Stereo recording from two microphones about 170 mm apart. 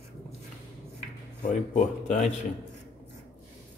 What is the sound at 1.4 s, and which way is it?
Speech, 45° left (ahead or behind).